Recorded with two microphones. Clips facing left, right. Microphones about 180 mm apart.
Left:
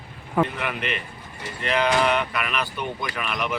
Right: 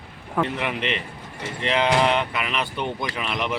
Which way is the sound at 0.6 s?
20° right (ahead or behind).